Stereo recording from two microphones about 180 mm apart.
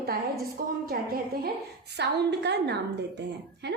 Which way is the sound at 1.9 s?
70° right (ahead or behind).